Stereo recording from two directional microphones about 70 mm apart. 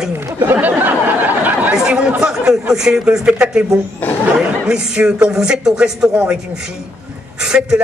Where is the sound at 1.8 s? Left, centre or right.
Centre.